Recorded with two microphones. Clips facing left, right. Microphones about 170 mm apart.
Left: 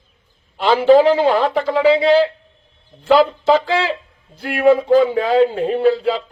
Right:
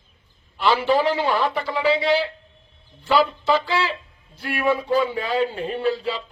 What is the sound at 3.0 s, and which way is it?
Speech, 70° left (ahead or behind).